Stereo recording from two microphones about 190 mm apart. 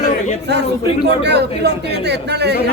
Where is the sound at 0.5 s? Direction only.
60° right (ahead or behind).